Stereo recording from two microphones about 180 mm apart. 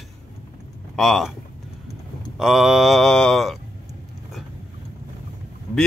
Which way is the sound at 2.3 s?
Centre (ahead or behind).